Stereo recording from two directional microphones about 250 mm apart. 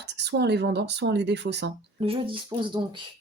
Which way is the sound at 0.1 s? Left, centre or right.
Right.